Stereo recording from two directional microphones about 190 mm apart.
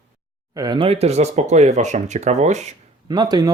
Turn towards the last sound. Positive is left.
turn(degrees=-20)  # may be behind; listen again after turning